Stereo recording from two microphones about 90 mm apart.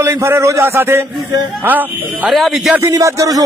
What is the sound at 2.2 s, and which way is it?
Speech, centre (ahead or behind).